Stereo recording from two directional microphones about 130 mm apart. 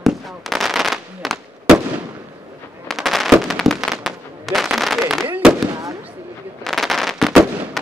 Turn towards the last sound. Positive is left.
turn(degrees=-10)  # may be behind; listen again after turning